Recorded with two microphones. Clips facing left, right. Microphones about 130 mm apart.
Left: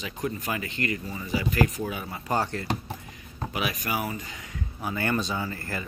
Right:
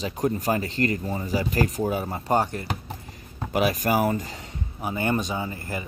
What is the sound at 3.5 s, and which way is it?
Speech, 40° right (ahead or behind).